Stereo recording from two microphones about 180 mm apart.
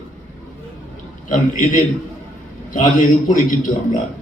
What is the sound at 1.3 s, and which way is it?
A man's voice, 45° left (ahead or behind).